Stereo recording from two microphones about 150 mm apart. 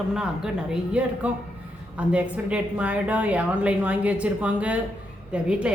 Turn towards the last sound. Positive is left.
turn(degrees=-5)  # may be behind; listen again after turning